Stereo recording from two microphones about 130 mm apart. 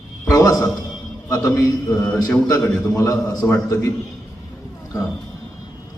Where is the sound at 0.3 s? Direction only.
25° left (ahead or behind).